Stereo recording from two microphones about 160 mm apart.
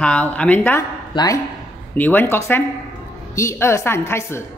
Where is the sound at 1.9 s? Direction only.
10° left (ahead or behind).